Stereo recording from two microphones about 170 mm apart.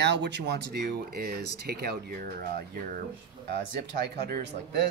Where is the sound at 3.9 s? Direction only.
80° right.